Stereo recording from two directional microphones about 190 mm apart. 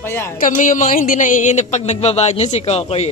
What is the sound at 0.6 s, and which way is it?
Speech, 40° left (ahead or behind).